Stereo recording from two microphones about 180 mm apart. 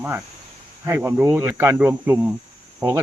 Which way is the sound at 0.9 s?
10° right (ahead or behind).